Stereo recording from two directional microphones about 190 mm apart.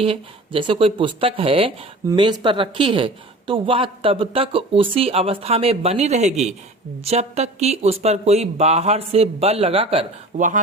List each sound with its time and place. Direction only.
0.0 s a woman's voice: 30° right (ahead or behind)